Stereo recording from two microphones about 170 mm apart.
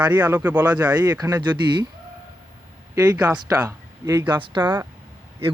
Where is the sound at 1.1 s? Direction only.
25° right (ahead or behind).